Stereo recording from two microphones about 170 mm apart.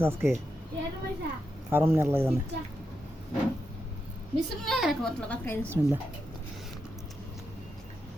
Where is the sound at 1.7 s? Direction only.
10° right (ahead or behind).